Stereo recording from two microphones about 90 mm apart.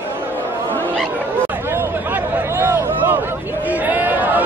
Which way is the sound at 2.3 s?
25° right (ahead or behind).